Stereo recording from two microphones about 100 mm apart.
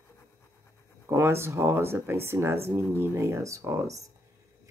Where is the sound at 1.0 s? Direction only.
25° right (ahead or behind).